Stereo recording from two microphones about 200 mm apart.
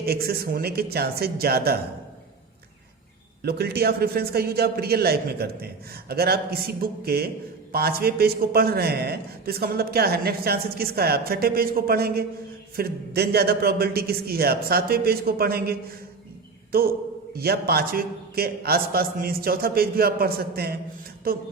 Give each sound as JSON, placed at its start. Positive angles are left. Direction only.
{"t": 0.0, "sound": "a man's voice", "side_deg": -50}
{"t": 3.4, "sound": "a man's voice", "side_deg": -55}
{"t": 17.3, "sound": "a man's voice", "side_deg": -50}